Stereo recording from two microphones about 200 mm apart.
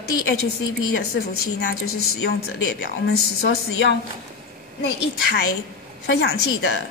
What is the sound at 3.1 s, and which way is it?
Speech, 60° left (ahead or behind).